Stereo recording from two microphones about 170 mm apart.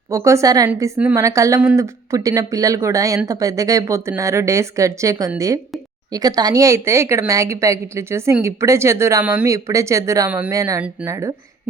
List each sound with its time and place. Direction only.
0.1 s speech: 15° right (ahead or behind)